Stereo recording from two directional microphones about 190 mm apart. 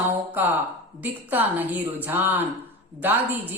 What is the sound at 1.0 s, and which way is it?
Speech, 10° right (ahead or behind).